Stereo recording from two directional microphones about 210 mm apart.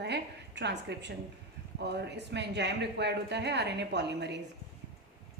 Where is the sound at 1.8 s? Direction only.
55° right (ahead or behind).